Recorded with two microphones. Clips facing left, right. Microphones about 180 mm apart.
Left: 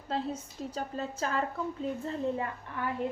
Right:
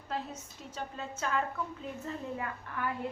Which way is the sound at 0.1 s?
30° left (ahead or behind).